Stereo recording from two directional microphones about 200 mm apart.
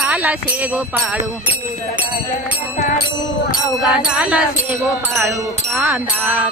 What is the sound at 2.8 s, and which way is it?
Music, 45° left (ahead or behind).